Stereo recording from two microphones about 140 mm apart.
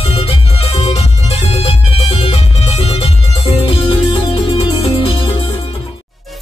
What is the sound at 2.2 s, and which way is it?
Music, 45° left (ahead or behind).